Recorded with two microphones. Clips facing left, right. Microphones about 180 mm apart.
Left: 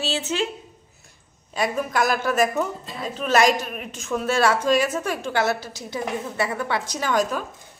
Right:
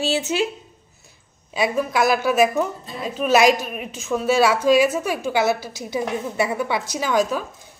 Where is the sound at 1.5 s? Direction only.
5° right (ahead or behind).